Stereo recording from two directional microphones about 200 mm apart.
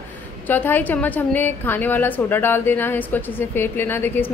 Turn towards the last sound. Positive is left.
turn(degrees=10)  # may be behind; listen again after turning